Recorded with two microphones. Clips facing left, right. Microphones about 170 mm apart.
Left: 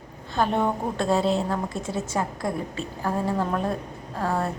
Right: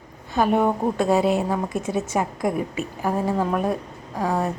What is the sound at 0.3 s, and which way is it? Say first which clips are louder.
A woman's voice: right 4 dB; 10° right (ahead or behind).